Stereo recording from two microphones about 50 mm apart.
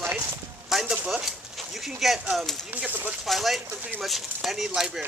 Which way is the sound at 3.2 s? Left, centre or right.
Centre.